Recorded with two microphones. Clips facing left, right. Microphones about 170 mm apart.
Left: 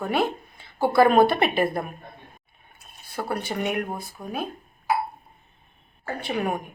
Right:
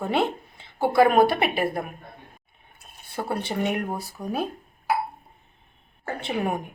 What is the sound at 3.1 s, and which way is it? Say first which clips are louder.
Speech: even; 25° right (ahead or behind).